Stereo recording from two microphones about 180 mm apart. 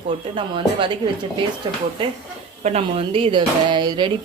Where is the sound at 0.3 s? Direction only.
30° right (ahead or behind).